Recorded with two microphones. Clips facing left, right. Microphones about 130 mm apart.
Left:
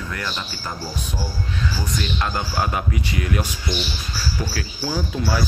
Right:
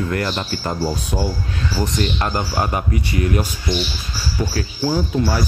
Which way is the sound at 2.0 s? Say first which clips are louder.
Right 2 dB; 40° right (ahead or behind).